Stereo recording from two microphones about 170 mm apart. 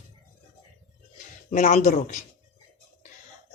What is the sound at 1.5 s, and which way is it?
Speech, 45° left (ahead or behind).